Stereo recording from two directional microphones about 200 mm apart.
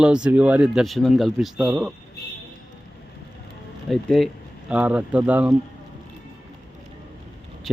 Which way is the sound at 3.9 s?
Centre (ahead or behind).